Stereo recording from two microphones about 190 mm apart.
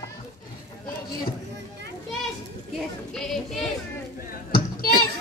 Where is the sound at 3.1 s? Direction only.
Centre (ahead or behind).